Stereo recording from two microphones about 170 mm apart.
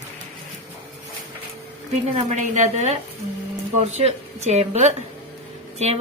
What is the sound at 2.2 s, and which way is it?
A woman's voice, 45° right (ahead or behind).